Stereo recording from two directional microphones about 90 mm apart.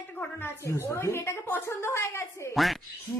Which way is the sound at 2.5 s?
Centre (ahead or behind).